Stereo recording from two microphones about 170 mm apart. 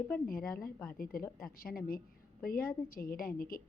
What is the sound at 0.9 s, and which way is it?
A woman's voice, 60° left (ahead or behind).